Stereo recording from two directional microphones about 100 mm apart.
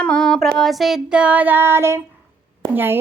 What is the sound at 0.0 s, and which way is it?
Child singing, 10° left (ahead or behind).